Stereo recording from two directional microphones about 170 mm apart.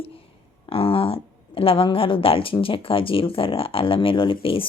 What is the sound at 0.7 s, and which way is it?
Speech, 35° left (ahead or behind).